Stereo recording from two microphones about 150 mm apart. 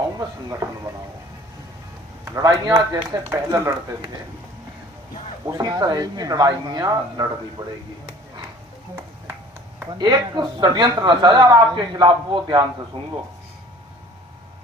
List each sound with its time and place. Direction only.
0.2 s speech: 25° right (ahead or behind)
2.3 s speech: 25° right (ahead or behind)
5.5 s speech: 25° right (ahead or behind)
10.0 s speech: 30° right (ahead or behind)